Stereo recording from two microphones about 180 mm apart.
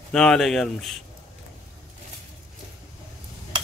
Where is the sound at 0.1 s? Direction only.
5° left (ahead or behind).